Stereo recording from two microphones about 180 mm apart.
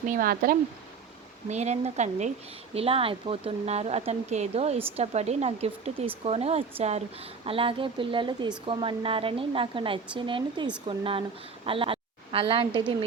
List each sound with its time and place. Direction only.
0.1 s speech: 55° right (ahead or behind)
1.5 s a woman's voice: 40° right (ahead or behind)